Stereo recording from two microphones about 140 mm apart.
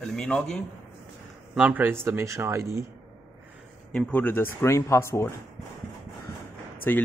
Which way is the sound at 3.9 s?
10° left (ahead or behind).